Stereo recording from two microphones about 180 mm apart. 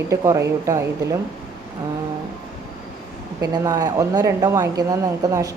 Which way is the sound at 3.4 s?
20° right (ahead or behind).